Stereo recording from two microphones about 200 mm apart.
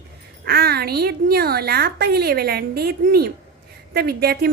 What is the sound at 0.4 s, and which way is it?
A woman's voice, 50° right (ahead or behind).